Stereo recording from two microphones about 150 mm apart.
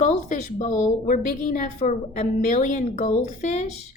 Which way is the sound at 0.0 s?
55° left (ahead or behind).